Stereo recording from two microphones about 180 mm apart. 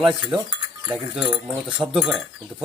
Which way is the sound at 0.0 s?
Centre (ahead or behind).